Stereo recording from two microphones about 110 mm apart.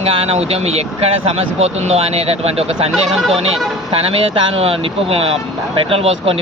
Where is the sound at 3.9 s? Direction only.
55° right (ahead or behind).